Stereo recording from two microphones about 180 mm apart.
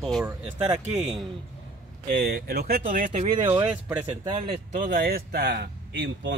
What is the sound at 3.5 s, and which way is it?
Speech, 10° right (ahead or behind).